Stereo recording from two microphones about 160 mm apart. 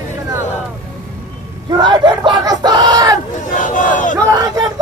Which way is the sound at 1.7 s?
30° right (ahead or behind).